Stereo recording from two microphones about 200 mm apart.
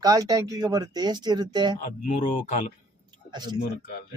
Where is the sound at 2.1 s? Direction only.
40° left (ahead or behind).